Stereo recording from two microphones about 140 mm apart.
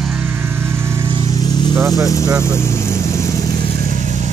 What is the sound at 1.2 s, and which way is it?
Vehicle, 25° left (ahead or behind).